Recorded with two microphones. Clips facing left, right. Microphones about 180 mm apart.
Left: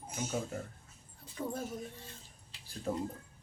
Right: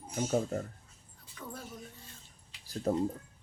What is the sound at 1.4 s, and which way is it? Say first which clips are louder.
Speech: left 8 dB; 30° left (ahead or behind).